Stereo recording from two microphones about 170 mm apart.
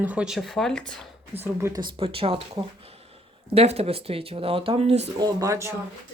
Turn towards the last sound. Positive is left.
turn(degrees=-20)  # may be behind; listen again after turning